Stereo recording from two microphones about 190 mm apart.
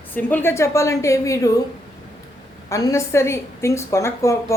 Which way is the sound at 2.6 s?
15° left (ahead or behind).